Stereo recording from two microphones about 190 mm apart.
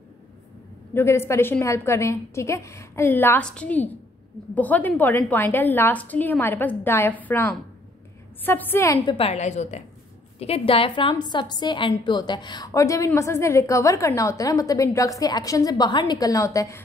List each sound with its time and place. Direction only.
0.9 s a woman's voice: 15° left (ahead or behind)
9.0 s a woman's voice: 30° left (ahead or behind)